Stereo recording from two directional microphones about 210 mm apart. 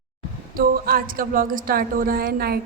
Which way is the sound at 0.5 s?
40° right (ahead or behind).